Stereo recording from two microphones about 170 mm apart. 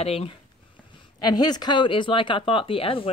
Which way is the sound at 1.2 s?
25° left (ahead or behind).